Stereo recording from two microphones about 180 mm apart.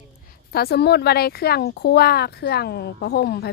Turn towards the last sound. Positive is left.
turn(degrees=60)  # may be behind; listen again after turning